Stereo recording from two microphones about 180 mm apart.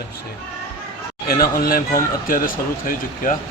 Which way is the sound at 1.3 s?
55° left (ahead or behind).